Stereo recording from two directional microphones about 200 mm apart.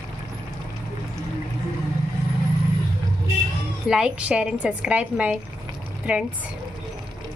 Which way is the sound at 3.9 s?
5° right (ahead or behind).